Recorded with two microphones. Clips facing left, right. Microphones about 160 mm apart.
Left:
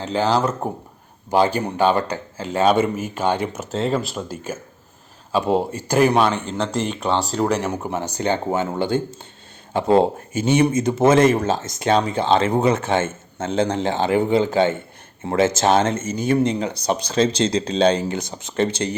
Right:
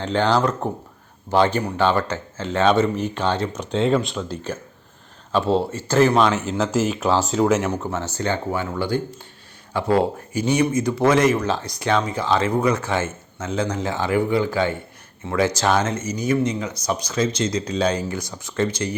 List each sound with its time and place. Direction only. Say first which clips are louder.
0.0 s speech: even; 5° left (ahead or behind)
6.4 s speech: right 2 dB; 5° right (ahead or behind)
7.7 s speech: even; 15° left (ahead or behind)
11.3 s speech: left 2 dB; 50° left (ahead or behind)
11.6 s speech: left 3 dB; 20° left (ahead or behind)